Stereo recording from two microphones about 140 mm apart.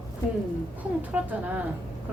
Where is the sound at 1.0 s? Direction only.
10° right (ahead or behind).